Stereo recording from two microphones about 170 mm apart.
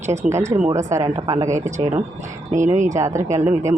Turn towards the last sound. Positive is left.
turn(degrees=-15)  # may be behind; listen again after turning